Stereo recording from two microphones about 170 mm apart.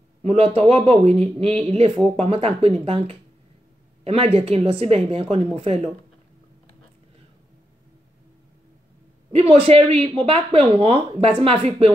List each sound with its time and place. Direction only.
0.2 s a woman's voice: 35° right (ahead or behind)
9.3 s a woman's voice: 35° right (ahead or behind)